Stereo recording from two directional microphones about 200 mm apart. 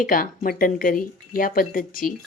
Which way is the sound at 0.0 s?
45° left (ahead or behind).